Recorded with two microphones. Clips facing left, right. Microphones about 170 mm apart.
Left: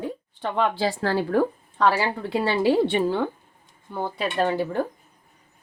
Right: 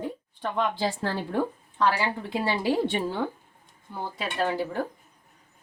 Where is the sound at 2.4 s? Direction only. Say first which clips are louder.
Left 5 dB; 65° left (ahead or behind).